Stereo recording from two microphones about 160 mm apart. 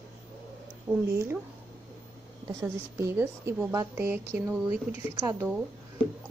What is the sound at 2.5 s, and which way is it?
A woman's voice, 15° right (ahead or behind).